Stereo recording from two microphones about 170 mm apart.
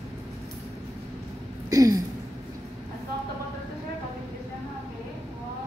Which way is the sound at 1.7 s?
20° right (ahead or behind).